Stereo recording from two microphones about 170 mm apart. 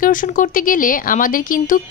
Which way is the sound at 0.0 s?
50° left (ahead or behind).